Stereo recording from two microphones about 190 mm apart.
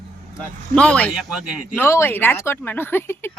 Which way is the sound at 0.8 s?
5° left (ahead or behind).